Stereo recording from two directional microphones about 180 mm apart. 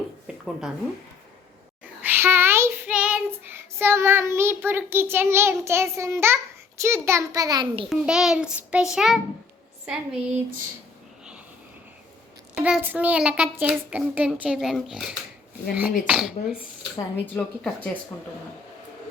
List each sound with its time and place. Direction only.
2.0 s child singing: 10° right (ahead or behind)
6.8 s a child's voice: 15° right (ahead or behind)
7.9 s a child's voice: 5° right (ahead or behind)
12.5 s a child's voice: 5° right (ahead or behind)
17.3 s speech: 5° left (ahead or behind)